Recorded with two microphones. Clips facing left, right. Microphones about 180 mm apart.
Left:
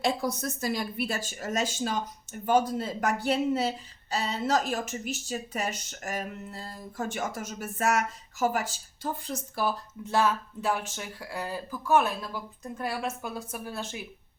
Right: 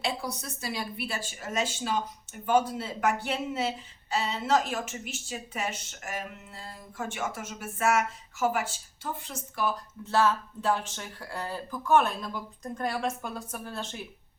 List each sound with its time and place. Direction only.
0.4 s speech: 45° left (ahead or behind)
10.0 s speech: 15° left (ahead or behind)